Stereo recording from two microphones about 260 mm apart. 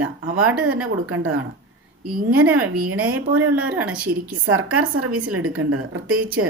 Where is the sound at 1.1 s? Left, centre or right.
Right.